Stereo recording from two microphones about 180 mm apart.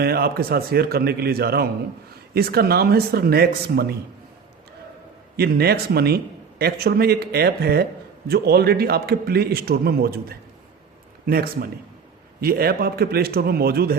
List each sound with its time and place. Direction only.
0.0 s a man's voice: 60° right (ahead or behind)
5.4 s a man's voice: 60° right (ahead or behind)